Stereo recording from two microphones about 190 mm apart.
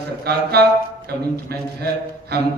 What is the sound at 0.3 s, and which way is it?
Speech, 55° right (ahead or behind).